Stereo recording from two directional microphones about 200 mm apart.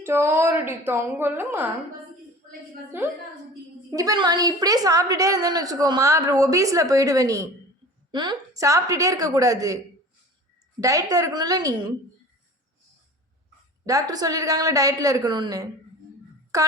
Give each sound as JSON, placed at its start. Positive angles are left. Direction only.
{"t": 0.0, "sound": "a woman's voice", "side_deg": -15}
{"t": 2.9, "sound": "a woman's voice", "side_deg": -10}
{"t": 10.8, "sound": "a woman's voice", "side_deg": -15}
{"t": 13.8, "sound": "a woman's voice", "side_deg": -20}